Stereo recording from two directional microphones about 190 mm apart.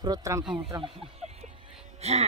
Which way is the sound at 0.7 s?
30° right (ahead or behind).